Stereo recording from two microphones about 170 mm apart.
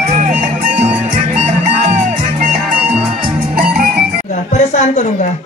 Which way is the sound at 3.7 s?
60° right (ahead or behind).